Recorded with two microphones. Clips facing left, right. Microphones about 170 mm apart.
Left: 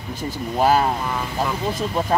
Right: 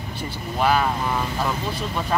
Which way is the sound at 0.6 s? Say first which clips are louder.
Left 3 dB; 35° left (ahead or behind).